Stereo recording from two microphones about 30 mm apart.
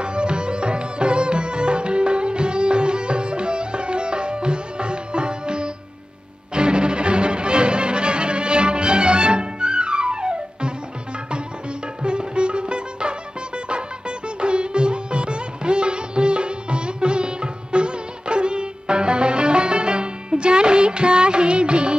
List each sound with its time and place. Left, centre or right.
0.0 s music: right
12.0 s music: right